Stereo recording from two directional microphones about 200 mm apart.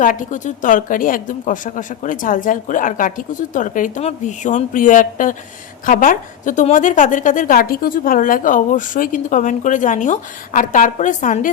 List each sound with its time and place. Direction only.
0.0 s a woman's voice: 40° left (ahead or behind)